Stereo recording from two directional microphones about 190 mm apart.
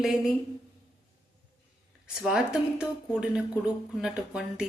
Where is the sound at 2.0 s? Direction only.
5° right (ahead or behind).